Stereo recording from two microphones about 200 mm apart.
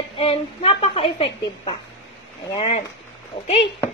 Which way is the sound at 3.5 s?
25° left (ahead or behind).